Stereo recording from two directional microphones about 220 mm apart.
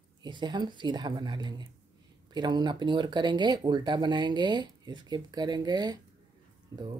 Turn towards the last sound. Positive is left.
turn(degrees=-15)  # may be behind; listen again after turning